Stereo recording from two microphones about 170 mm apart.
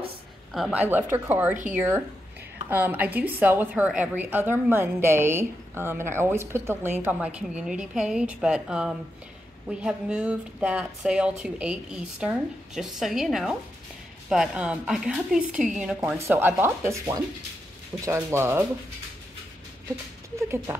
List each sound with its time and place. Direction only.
0.5 s a woman's voice: 5° right (ahead or behind)
2.7 s a woman's voice: 10° right (ahead or behind)
16.2 s a woman's voice: 15° right (ahead or behind)
20.4 s a woman's voice: 15° right (ahead or behind)